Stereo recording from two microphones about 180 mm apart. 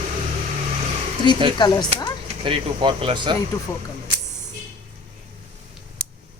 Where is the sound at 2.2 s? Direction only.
30° right (ahead or behind).